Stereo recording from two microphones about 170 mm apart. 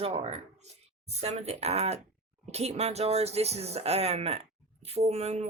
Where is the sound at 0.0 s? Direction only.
35° right (ahead or behind).